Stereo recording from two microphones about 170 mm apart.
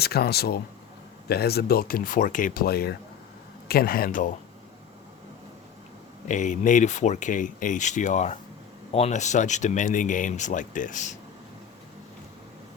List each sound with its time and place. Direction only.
0.0 s speech: 65° left (ahead or behind)
6.2 s speech: 45° left (ahead or behind)